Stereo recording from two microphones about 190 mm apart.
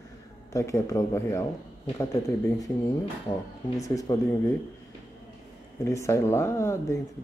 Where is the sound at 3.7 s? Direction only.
15° left (ahead or behind).